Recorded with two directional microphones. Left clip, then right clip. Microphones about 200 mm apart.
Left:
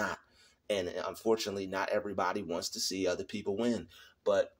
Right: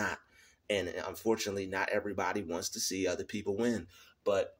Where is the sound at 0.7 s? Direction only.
5° right (ahead or behind).